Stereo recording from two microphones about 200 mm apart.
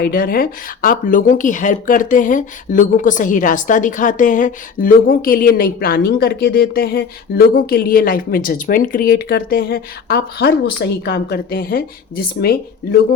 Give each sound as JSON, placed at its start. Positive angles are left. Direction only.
{"t": 0.0, "sound": "speech", "side_deg": 45}